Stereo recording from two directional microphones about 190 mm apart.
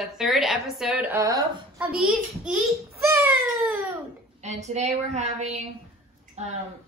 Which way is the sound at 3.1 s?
15° right (ahead or behind).